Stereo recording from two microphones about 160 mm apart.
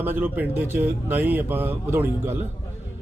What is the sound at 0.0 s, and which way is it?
Speech, 10° right (ahead or behind).